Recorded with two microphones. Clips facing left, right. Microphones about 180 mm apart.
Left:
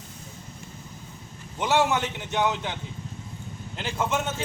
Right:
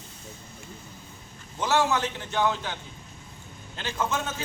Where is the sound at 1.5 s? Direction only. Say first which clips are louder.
Left 1 dB; 20° left (ahead or behind).